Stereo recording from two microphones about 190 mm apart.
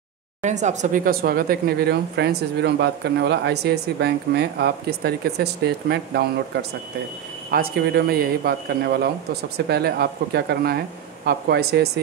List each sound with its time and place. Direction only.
0.4 s speech: 40° right (ahead or behind); by 6.2 s 60° right (ahead or behind)
7.5 s speech: 55° right (ahead or behind)